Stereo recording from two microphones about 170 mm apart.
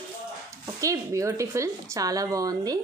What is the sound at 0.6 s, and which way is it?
A woman's voice, 20° right (ahead or behind).